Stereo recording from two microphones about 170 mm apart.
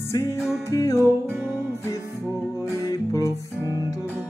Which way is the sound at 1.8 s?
15° left (ahead or behind).